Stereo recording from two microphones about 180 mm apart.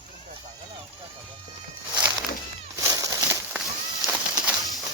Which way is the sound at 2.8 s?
20° right (ahead or behind).